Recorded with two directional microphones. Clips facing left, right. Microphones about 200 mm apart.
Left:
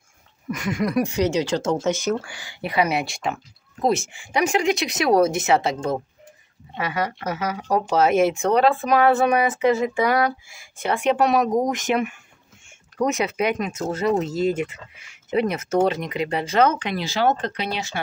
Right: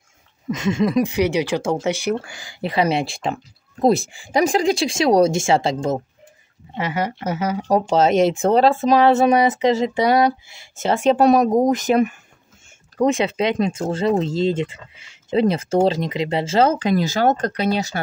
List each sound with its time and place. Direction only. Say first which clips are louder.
0.5 s speech: right 5 dB; 25° right (ahead or behind)
2.6 s a woman's voice: right 3 dB; 30° right (ahead or behind)